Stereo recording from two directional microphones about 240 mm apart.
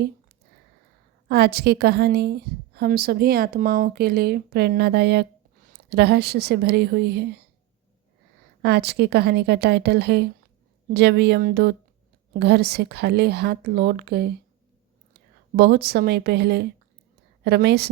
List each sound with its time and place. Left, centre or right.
1.3 s a woman's voice: right
8.6 s a woman's voice: right
15.5 s a woman's voice: right